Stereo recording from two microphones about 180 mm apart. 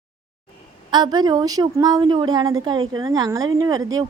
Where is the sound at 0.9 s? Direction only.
25° right (ahead or behind).